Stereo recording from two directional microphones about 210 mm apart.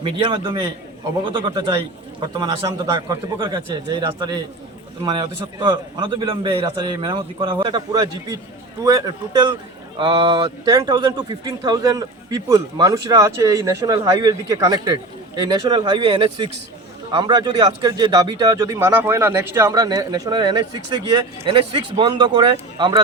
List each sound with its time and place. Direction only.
0.0 s a man's voice: 25° right (ahead or behind)
5.5 s a man's voice: 20° right (ahead or behind)